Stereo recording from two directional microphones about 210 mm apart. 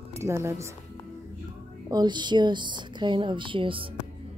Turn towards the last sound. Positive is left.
turn(degrees=-25)  # may be behind; listen again after turning